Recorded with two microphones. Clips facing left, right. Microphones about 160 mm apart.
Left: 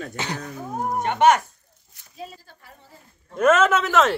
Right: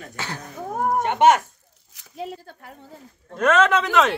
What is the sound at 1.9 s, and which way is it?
Speech, 80° right.